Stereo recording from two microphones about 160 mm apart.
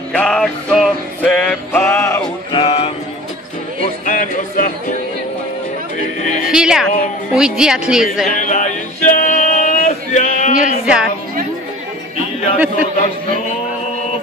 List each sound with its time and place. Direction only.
0.1 s music: 5° left (ahead or behind)
2.2 s music: 35° left (ahead or behind)
4.0 s music: 55° left (ahead or behind)
6.5 s speech: 5° right (ahead or behind)
8.3 s male singing: 50° left (ahead or behind)
10.5 s music: 5° right (ahead or behind)
12.9 s speech: 50° left (ahead or behind)